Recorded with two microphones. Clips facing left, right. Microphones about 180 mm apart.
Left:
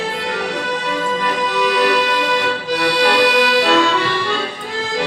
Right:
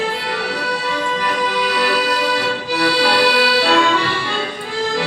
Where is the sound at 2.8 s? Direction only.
20° left (ahead or behind).